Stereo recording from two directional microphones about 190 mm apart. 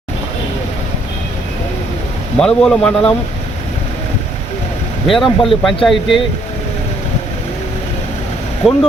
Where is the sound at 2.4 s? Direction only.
5° left (ahead or behind).